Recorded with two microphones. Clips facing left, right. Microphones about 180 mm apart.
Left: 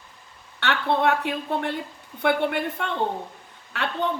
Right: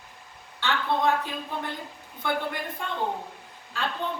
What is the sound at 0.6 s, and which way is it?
A woman's voice, 70° left (ahead or behind).